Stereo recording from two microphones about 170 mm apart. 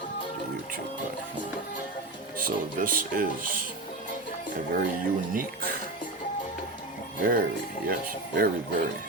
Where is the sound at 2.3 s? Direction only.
55° right (ahead or behind).